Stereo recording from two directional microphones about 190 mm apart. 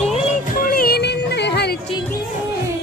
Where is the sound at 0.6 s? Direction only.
50° left (ahead or behind).